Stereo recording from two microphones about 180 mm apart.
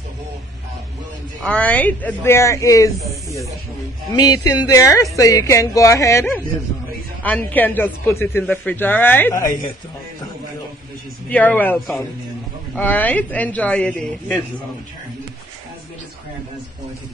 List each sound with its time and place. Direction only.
1.4 s speech: 5° left (ahead or behind)
4.1 s speech: 20° left (ahead or behind)
11.2 s speech: 10° left (ahead or behind)